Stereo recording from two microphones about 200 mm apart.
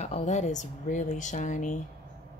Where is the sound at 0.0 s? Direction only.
35° left (ahead or behind).